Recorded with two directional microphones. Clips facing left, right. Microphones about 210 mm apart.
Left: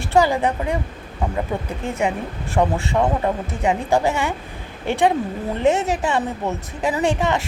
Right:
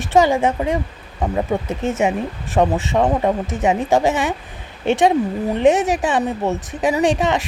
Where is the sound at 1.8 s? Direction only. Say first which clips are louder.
Right 3 dB; 20° right (ahead or behind).